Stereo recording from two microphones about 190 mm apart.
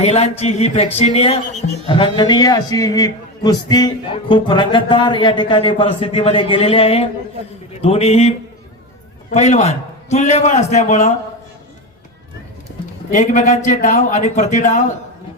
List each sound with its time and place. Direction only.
0.0 s a man's voice: 35° left (ahead or behind)
9.3 s a man's voice: 35° left (ahead or behind)
13.1 s a man's voice: 40° left (ahead or behind)